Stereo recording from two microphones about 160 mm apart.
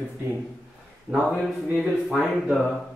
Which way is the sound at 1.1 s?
Centre (ahead or behind).